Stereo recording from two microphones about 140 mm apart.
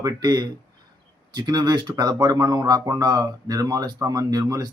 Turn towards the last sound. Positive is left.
turn(degrees=-25)  # may be behind; listen again after turning